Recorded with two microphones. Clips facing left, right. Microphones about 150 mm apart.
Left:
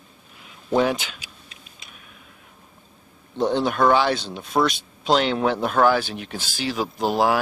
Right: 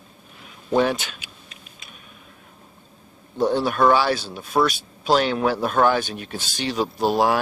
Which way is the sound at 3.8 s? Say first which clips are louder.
Right 1 dB; 20° left (ahead or behind).